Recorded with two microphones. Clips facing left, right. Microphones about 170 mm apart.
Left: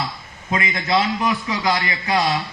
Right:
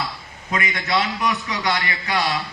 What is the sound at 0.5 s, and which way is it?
A man's voice, 30° left (ahead or behind).